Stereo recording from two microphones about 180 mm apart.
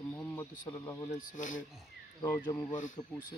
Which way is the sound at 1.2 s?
45° left (ahead or behind).